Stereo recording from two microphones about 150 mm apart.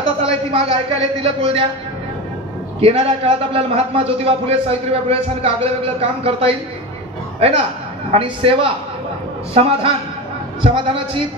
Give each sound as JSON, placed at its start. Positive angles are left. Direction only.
{"t": 0.2, "sound": "a sound", "side_deg": -40}
{"t": 1.2, "sound": "a man's voice", "side_deg": -40}
{"t": 2.8, "sound": "a man's voice", "side_deg": -40}